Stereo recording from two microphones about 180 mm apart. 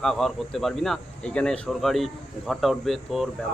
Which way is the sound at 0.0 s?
Centre (ahead or behind).